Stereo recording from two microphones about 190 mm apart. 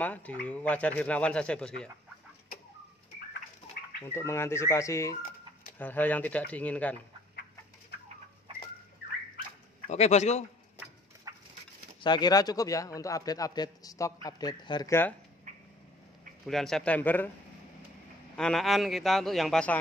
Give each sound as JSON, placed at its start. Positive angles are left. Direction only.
{"t": 0.0, "sound": "speech", "side_deg": 10}
{"t": 3.6, "sound": "bird", "side_deg": 30}
{"t": 4.0, "sound": "speech", "side_deg": 15}
{"t": 9.8, "sound": "speech", "side_deg": 35}
{"t": 11.3, "sound": "fowl", "side_deg": -20}
{"t": 12.0, "sound": "a man's voice", "side_deg": 20}
{"t": 16.4, "sound": "speech", "side_deg": 0}
{"t": 18.3, "sound": "a man's voice", "side_deg": 5}